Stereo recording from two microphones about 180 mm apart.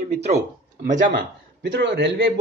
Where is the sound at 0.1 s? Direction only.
40° right (ahead or behind).